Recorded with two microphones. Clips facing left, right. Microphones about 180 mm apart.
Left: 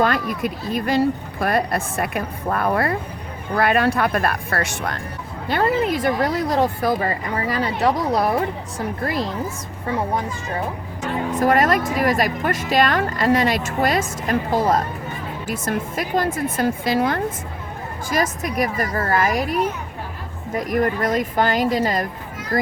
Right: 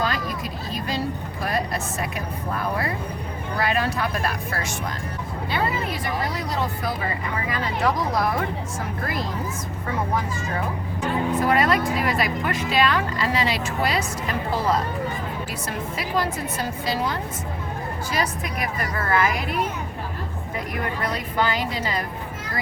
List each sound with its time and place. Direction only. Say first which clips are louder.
0.0 s speech: left 6 dB; 55° left (ahead or behind)
5.5 s speech: left 7 dB; 50° left (ahead or behind)
11.0 s speech: left 2 dB; 45° left (ahead or behind)
20.6 s speech: left 8 dB; 45° left (ahead or behind)